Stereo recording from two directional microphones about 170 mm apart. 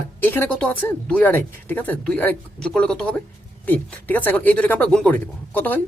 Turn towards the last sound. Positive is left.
turn(degrees=10)  # may be behind; listen again after turning